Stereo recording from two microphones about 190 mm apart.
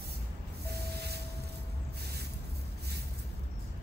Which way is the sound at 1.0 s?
60° right (ahead or behind).